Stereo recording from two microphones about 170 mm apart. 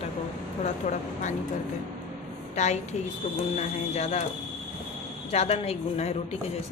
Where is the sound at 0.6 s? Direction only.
45° left (ahead or behind).